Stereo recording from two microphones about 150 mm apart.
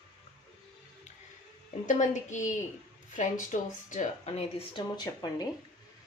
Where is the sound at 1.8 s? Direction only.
55° left (ahead or behind).